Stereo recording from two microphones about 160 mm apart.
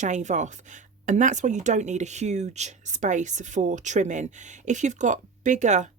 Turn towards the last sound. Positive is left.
turn(degrees=-50)  # may be behind; listen again after turning